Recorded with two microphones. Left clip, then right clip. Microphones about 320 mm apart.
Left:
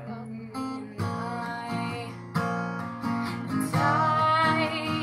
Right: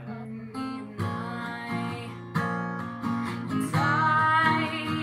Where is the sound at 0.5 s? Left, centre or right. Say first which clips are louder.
Left 1 dB; centre.